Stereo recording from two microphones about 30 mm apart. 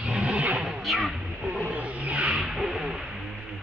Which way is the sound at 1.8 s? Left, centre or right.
Right.